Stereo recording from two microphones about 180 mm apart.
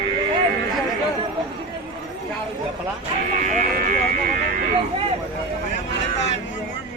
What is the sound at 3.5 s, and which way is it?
Speech, 45° right (ahead or behind).